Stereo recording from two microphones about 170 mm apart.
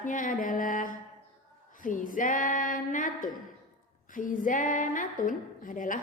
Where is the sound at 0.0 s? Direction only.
50° left (ahead or behind).